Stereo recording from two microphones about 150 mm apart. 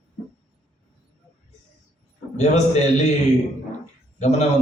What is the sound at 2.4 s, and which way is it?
Speech, 50° left (ahead or behind).